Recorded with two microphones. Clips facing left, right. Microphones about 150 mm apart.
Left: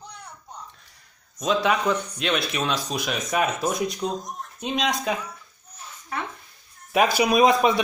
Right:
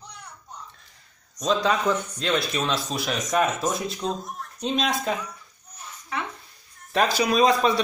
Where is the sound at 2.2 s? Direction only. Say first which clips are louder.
Even; 15° left (ahead or behind).